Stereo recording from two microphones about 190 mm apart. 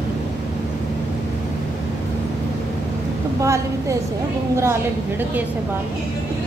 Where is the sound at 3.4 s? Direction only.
15° right (ahead or behind).